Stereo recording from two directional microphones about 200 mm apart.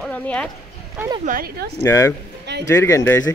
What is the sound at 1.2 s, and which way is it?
Speech, 45° right (ahead or behind).